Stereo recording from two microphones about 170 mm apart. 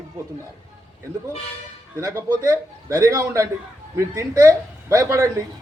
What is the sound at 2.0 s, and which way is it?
A man's voice, 20° right (ahead or behind).